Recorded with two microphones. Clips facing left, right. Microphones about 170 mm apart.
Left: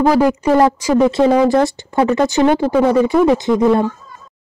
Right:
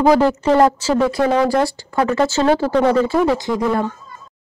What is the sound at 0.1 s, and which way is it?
Speech, 15° left (ahead or behind).